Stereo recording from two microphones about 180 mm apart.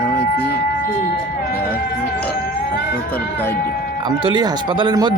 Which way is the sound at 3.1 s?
10° left (ahead or behind).